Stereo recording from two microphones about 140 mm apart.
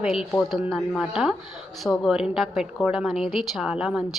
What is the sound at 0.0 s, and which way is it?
A woman's voice, centre (ahead or behind).